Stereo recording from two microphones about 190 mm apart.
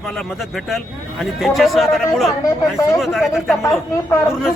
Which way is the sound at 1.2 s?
Centre (ahead or behind).